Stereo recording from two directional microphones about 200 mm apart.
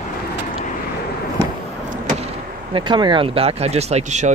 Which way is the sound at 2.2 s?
25° right (ahead or behind).